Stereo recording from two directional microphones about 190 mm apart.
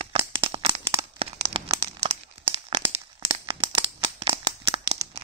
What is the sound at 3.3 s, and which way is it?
Tearing, 30° right (ahead or behind).